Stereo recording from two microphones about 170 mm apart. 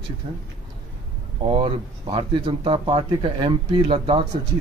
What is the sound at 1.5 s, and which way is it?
Speech, 30° right (ahead or behind).